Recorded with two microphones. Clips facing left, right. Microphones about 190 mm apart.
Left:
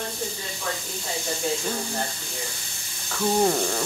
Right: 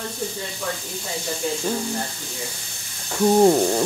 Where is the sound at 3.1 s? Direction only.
25° right (ahead or behind).